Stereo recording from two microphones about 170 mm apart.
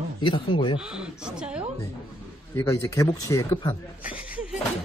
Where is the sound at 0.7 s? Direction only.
5° right (ahead or behind).